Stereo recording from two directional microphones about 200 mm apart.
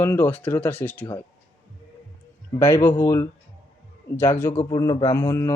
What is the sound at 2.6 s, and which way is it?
Speech, 10° left (ahead or behind).